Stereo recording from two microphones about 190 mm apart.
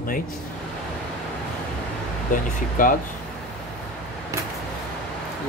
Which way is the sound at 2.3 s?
45° left (ahead or behind).